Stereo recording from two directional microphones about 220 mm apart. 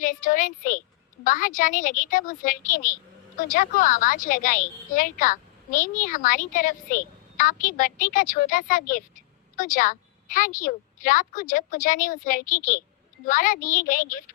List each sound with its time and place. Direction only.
0.0 s a woman's voice: 40° left (ahead or behind)